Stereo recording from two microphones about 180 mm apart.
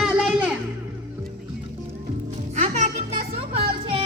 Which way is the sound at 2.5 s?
40° right (ahead or behind).